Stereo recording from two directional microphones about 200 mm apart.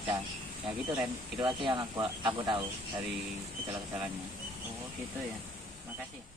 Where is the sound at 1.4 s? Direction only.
25° right (ahead or behind).